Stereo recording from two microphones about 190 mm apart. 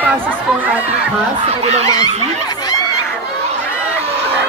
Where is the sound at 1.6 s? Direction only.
35° right (ahead or behind).